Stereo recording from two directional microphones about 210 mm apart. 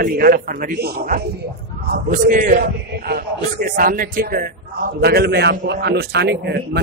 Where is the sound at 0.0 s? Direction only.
45° right (ahead or behind).